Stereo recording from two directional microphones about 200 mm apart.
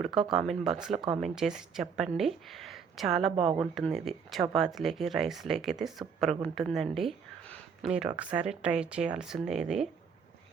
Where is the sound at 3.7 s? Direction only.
Centre (ahead or behind).